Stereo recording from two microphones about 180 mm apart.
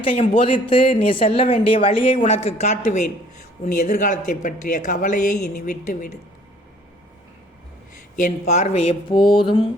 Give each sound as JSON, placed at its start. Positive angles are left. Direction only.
{"t": 0.0, "sound": "speech", "side_deg": 30}
{"t": 8.1, "sound": "speech", "side_deg": 40}